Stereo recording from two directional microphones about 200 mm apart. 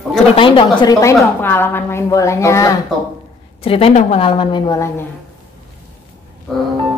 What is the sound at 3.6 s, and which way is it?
A woman's voice, 30° left (ahead or behind).